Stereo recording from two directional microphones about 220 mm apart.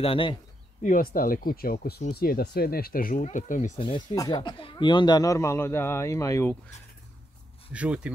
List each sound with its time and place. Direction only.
0.0 s speech: 25° left (ahead or behind)
0.8 s speech: 40° left (ahead or behind); by 6.5 s 15° left (ahead or behind)
7.7 s speech: 5° right (ahead or behind)